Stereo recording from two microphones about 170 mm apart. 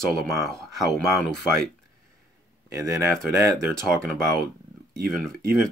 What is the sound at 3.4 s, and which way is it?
Speech, 15° right (ahead or behind).